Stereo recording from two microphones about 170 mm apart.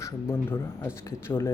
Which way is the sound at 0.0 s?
15° left (ahead or behind).